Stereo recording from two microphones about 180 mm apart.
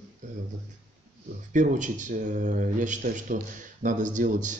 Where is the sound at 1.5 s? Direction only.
45° right (ahead or behind).